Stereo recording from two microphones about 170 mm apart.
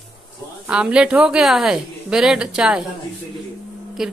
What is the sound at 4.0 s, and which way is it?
Speech, 5° right (ahead or behind).